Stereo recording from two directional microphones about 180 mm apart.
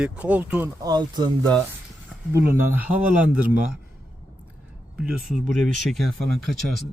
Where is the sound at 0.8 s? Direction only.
20° right (ahead or behind).